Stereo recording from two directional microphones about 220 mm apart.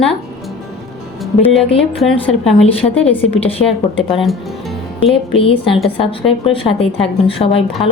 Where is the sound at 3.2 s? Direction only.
25° left (ahead or behind).